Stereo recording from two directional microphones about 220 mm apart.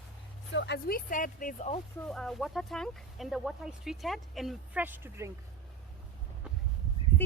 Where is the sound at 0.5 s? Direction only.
50° left (ahead or behind); by 1.8 s 35° left (ahead or behind).